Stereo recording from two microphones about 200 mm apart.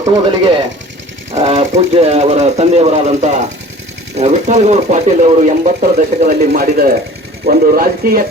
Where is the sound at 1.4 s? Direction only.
35° right (ahead or behind).